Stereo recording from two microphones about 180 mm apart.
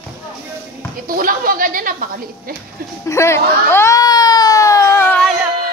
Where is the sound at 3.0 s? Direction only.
15° left (ahead or behind).